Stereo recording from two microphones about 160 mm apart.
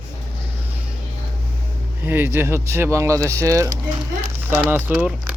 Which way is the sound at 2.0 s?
15° right (ahead or behind).